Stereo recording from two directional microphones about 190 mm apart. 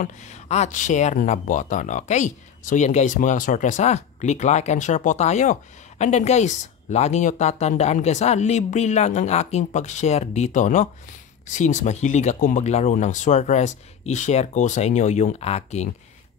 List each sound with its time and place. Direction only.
0.0 s speech: 40° left (ahead or behind)